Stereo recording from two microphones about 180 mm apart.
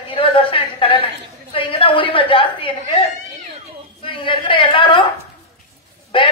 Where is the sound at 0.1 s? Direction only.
30° left (ahead or behind).